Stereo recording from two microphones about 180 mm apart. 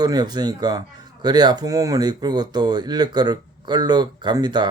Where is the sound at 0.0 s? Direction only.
20° right (ahead or behind).